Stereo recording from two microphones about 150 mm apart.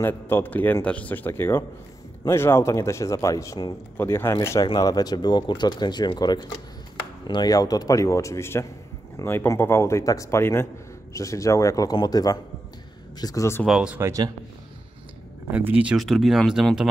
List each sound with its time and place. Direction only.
0.0 s a man's voice: 15° left (ahead or behind)
13.7 s speech: 5° right (ahead or behind)
15.5 s speech: 10° right (ahead or behind)